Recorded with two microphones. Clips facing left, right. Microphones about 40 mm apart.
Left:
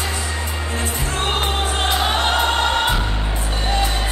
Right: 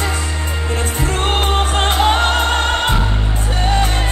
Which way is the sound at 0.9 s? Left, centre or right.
Right.